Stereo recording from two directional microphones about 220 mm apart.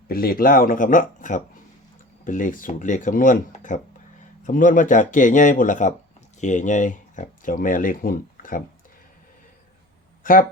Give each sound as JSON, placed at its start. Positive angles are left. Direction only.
{"t": 0.1, "sound": "speech", "side_deg": 40}